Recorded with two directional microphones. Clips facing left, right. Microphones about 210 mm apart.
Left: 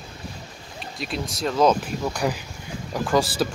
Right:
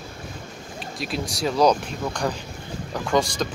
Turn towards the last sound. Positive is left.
turn(degrees=5)  # may be behind; listen again after turning